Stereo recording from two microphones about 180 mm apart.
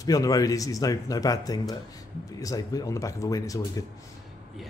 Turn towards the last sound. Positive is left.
turn(degrees=20)  # may be behind; listen again after turning